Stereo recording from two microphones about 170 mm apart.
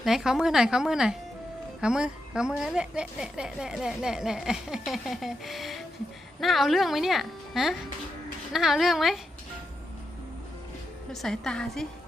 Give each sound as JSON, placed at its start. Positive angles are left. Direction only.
{"t": 0.0, "sound": "a woman's voice", "side_deg": 0}
{"t": 11.1, "sound": "a woman's voice", "side_deg": 0}